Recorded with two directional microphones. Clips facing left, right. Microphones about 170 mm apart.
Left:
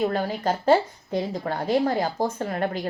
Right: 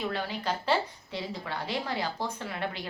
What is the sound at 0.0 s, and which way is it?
A woman's voice, 45° left (ahead or behind).